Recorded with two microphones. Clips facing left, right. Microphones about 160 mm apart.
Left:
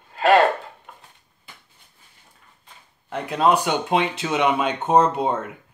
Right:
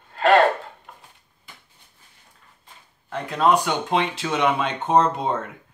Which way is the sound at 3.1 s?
10° left (ahead or behind).